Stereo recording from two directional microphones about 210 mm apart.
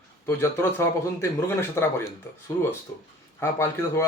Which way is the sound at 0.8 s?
10° left (ahead or behind).